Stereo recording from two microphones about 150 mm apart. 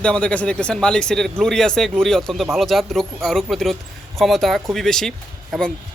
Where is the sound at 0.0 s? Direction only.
5° left (ahead or behind).